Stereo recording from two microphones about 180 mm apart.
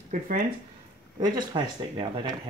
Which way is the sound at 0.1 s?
50° right (ahead or behind).